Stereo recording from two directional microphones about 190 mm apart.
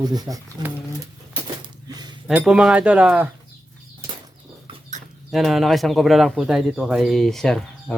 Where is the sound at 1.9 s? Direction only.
20° right (ahead or behind).